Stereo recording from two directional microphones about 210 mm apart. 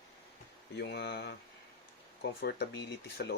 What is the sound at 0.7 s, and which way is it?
Speech, 50° left (ahead or behind).